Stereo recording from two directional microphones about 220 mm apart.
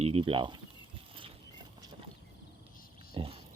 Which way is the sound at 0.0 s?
25° right (ahead or behind).